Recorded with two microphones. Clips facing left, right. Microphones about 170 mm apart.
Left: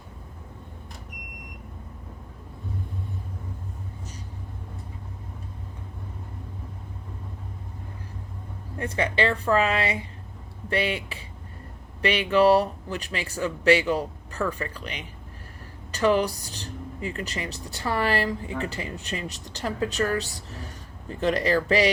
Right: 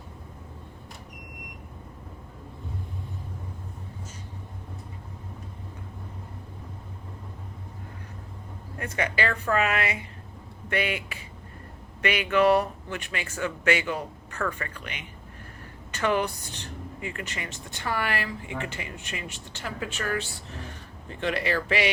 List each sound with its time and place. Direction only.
8.8 s a woman's voice: 30° left (ahead or behind)